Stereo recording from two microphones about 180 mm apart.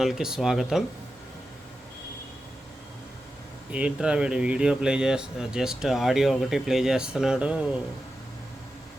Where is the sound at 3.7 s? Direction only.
5° right (ahead or behind).